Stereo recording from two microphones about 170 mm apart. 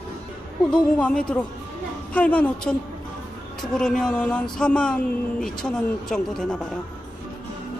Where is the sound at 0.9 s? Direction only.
5° left (ahead or behind).